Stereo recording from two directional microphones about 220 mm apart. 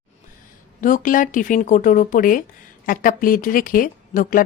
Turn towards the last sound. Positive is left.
turn(degrees=40)  # may be behind; listen again after turning